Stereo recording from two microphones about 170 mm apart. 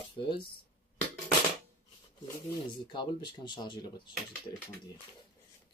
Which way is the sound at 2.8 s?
25° left (ahead or behind).